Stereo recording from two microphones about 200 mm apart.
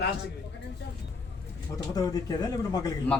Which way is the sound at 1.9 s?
20° left (ahead or behind).